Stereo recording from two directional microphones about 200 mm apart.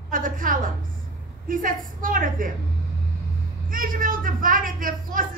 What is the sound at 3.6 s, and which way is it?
Speech, 45° right (ahead or behind).